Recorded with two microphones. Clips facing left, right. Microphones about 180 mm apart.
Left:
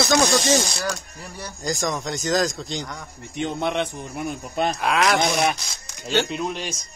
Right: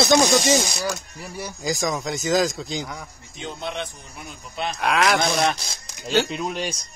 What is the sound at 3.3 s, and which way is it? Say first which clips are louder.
Speech: left 7 dB; 60° left (ahead or behind).